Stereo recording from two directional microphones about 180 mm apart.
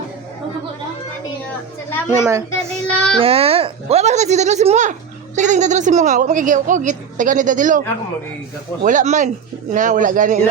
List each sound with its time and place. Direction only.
1.5 s speech: 10° left (ahead or behind)
2.6 s child singing: 5° left (ahead or behind)
3.2 s speech: 30° right (ahead or behind)
8.8 s speech: 45° right (ahead or behind)